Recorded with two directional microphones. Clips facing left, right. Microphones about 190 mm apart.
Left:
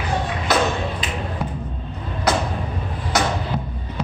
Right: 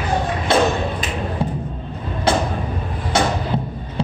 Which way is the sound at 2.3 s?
30° right (ahead or behind).